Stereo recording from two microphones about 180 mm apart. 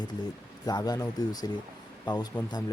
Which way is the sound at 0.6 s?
20° left (ahead or behind).